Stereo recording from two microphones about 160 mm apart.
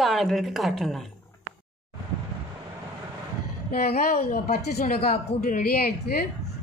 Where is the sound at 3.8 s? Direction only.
75° left (ahead or behind).